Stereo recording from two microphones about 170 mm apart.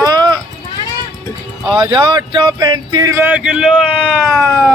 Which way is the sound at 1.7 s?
25° right (ahead or behind).